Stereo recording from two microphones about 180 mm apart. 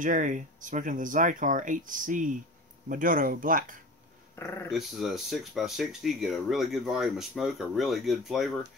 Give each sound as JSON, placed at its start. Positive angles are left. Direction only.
{"t": 0.0, "sound": "speech", "side_deg": -45}
{"t": 4.4, "sound": "speech", "side_deg": 15}
{"t": 4.6, "sound": "speech", "side_deg": 0}